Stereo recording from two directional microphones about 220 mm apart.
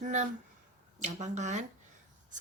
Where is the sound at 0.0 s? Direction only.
35° right (ahead or behind).